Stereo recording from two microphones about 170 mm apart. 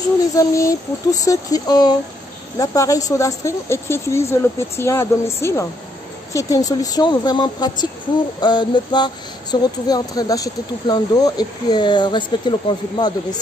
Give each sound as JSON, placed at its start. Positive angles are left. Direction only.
{"t": 0.4, "sound": "speech", "side_deg": 20}